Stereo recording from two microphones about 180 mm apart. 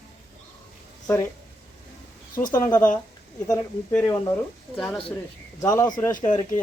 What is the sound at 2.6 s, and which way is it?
Speech, 10° left (ahead or behind).